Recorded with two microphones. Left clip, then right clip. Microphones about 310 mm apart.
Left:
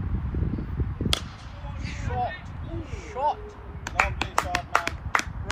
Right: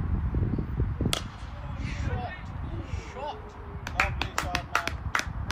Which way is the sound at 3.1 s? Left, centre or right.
Centre.